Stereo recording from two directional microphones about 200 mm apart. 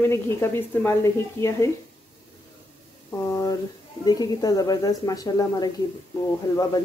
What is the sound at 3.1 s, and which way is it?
A woman's voice, 20° left (ahead or behind).